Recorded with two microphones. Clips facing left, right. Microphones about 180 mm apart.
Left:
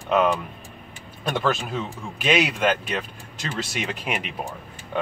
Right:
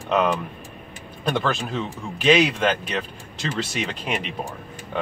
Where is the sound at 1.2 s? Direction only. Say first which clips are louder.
Even; 5° left (ahead or behind).